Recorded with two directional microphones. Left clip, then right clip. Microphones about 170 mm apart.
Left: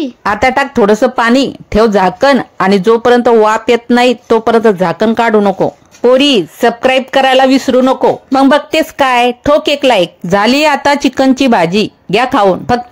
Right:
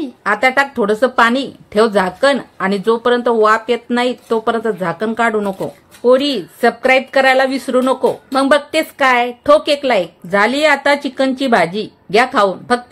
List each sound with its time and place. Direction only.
0.2 s a woman's voice: 50° left (ahead or behind)